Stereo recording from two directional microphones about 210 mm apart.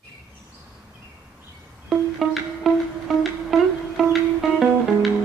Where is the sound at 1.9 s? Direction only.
Centre (ahead or behind).